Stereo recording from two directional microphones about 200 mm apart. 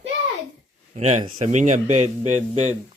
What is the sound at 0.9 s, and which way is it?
Speech, 35° right (ahead or behind).